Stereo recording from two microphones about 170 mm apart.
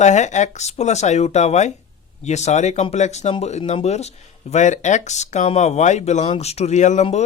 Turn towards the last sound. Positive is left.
turn(degrees=45)  # may be behind; listen again after turning